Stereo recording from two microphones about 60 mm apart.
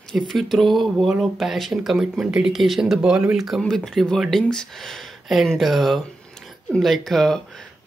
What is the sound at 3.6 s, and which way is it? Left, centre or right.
Speech, centre.